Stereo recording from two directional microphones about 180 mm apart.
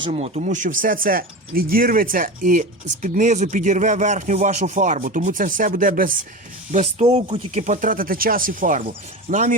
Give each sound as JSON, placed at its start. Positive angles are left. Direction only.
{"t": 0.0, "sound": "speech", "side_deg": -35}